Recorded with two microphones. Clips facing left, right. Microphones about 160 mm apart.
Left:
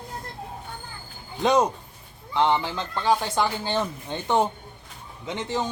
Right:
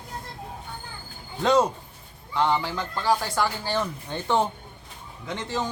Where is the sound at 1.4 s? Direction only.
20° left (ahead or behind).